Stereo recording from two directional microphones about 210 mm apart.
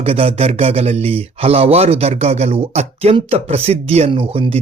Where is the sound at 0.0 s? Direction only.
25° right (ahead or behind).